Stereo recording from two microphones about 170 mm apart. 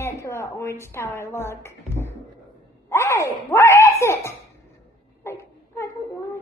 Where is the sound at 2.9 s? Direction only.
15° left (ahead or behind).